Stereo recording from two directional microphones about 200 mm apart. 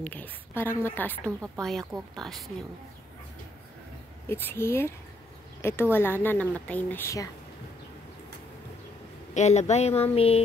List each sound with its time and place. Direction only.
0.0 s speech: 10° left (ahead or behind)
4.3 s speech: 10° left (ahead or behind)
9.3 s speech: 35° left (ahead or behind)